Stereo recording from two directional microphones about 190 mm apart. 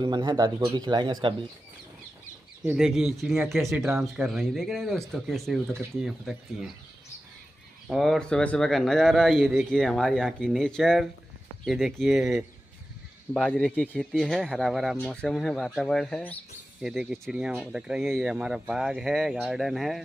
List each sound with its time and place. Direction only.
0.0 s speech: 25° right (ahead or behind)
2.6 s speech: 5° right (ahead or behind)
7.9 s speech: centre (ahead or behind)